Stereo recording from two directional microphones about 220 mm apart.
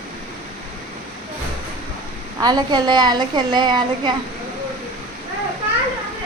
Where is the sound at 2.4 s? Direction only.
20° right (ahead or behind).